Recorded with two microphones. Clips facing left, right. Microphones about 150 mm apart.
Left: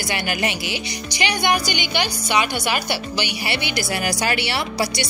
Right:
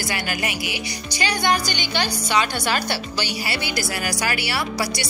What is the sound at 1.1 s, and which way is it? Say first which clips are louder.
A woman's voice: left 1 dB; 15° left (ahead or behind).